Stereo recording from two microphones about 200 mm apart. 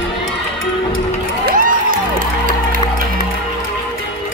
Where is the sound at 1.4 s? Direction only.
45° right (ahead or behind).